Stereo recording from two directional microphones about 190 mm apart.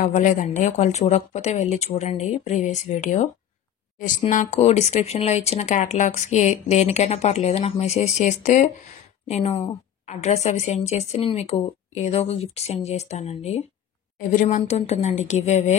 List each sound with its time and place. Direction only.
0.0 s speech: 40° left (ahead or behind)